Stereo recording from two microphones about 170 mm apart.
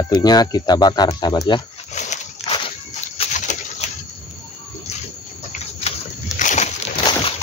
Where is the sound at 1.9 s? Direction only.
45° left (ahead or behind).